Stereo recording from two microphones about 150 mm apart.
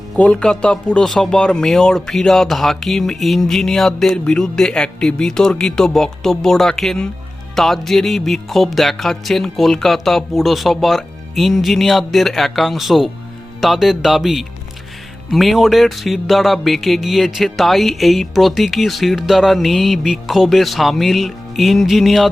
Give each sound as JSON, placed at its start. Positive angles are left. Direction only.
{"t": 0.2, "sound": "speech", "side_deg": 5}